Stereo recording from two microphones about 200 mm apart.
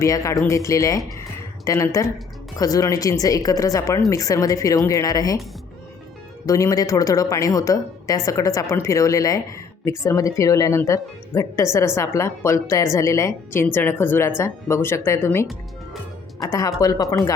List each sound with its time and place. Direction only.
0.0 s a woman's voice: 15° left (ahead or behind)
6.4 s a woman's voice: 15° left (ahead or behind)